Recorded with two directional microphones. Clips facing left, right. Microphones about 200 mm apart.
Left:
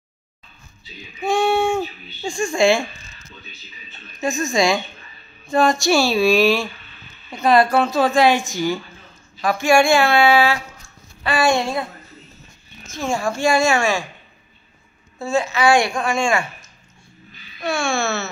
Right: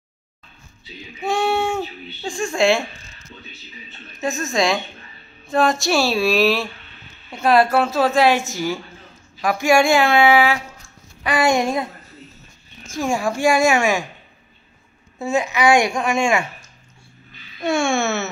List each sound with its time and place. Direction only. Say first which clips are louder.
1.2 s a sound: left 2 dB; 5° right (ahead or behind)
2.2 s speech: left 1 dB; centre (ahead or behind)
4.2 s a woman's voice: left 2 dB; 5° right (ahead or behind); by 11.9 s 20° right (ahead or behind)
12.9 s speech: right 1 dB; 15° right (ahead or behind)
15.1 s a woman's voice: even; 20° right (ahead or behind)
17.6 s babbling: right 3 dB; 25° right (ahead or behind)